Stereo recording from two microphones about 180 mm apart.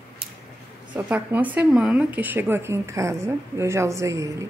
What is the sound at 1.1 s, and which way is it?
Speech, 10° right (ahead or behind).